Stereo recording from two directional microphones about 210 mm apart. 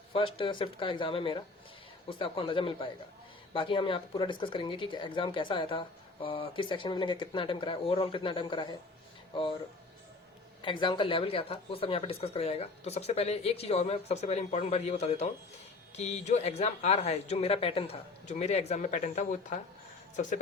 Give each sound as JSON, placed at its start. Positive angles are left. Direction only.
{"t": 0.1, "sound": "speech", "side_deg": 25}
{"t": 10.6, "sound": "speech", "side_deg": 25}